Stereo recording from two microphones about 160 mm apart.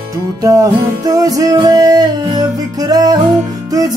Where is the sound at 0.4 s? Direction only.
20° right (ahead or behind).